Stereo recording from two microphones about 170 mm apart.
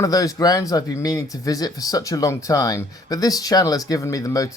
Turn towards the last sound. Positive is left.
turn(degrees=20)  # may be behind; listen again after turning